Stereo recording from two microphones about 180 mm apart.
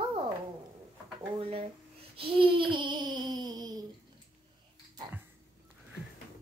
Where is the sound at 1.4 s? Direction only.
30° right (ahead or behind).